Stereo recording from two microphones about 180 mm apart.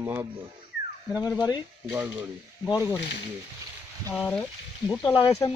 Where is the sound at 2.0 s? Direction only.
10° right (ahead or behind).